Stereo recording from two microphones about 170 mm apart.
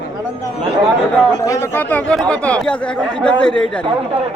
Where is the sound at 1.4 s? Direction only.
15° left (ahead or behind).